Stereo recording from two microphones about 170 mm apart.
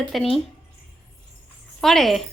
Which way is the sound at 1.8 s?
Centre (ahead or behind).